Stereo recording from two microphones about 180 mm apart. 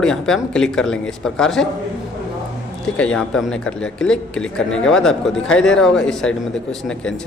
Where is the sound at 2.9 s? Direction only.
5° left (ahead or behind).